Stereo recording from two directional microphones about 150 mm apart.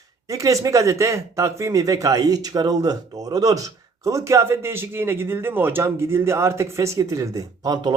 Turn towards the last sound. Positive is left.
turn(degrees=-30)  # may be behind; listen again after turning